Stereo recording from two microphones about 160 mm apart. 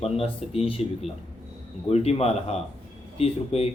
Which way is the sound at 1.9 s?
40° left (ahead or behind).